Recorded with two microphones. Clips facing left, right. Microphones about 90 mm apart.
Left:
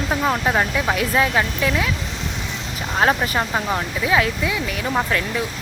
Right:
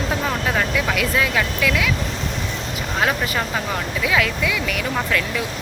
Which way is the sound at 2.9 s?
30° left (ahead or behind).